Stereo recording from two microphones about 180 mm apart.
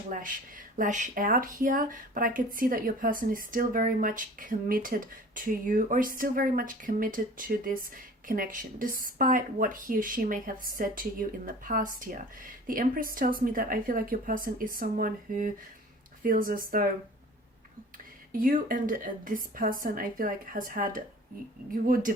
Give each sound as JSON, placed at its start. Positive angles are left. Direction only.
{"t": 0.1, "sound": "speech", "side_deg": -50}
{"t": 18.3, "sound": "speech", "side_deg": -50}